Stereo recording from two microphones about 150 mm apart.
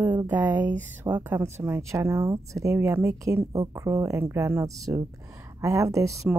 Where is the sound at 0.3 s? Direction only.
10° right (ahead or behind).